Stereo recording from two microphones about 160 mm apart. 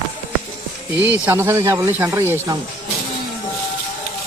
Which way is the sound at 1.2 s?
15° right (ahead or behind).